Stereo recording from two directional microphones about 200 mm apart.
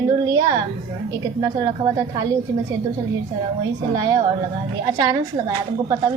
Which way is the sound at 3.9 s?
20° right (ahead or behind).